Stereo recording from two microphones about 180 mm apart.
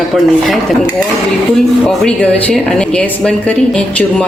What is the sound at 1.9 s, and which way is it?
A woman's voice, 5° left (ahead or behind).